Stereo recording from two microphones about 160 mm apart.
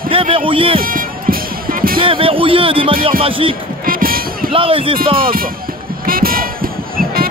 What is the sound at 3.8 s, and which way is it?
Music, 65° right (ahead or behind).